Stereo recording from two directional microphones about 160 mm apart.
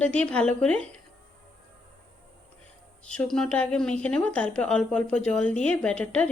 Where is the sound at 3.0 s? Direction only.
5° left (ahead or behind).